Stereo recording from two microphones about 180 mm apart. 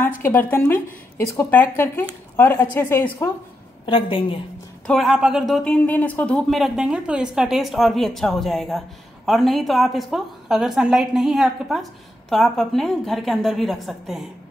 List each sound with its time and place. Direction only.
0.2 s a woman's voice: 10° left (ahead or behind)
3.8 s a woman's voice: 30° left (ahead or behind)
4.8 s speech: centre (ahead or behind)